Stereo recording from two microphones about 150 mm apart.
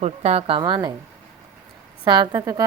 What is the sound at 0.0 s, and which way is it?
Speech, 45° right (ahead or behind).